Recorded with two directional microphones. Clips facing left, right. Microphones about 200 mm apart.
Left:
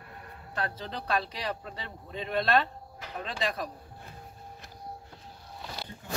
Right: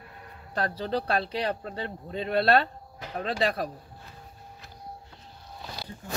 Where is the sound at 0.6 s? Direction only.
40° right (ahead or behind).